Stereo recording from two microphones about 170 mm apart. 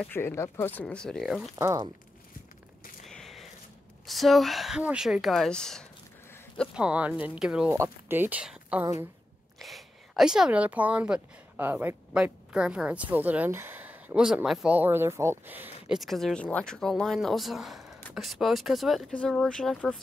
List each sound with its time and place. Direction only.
0.0 s speech: 15° left (ahead or behind)
1.6 s speech: 15° right (ahead or behind)
3.1 s a sound: centre (ahead or behind)
4.0 s speech: centre (ahead or behind)
16.0 s speech: centre (ahead or behind)